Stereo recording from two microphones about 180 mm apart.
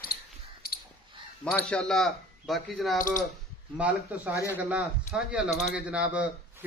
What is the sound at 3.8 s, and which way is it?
Speech, 10° right (ahead or behind).